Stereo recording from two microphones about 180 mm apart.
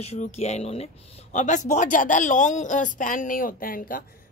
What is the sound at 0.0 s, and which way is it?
A woman's voice, 35° left (ahead or behind).